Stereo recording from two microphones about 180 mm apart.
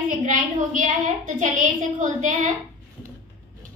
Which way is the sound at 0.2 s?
45° right (ahead or behind).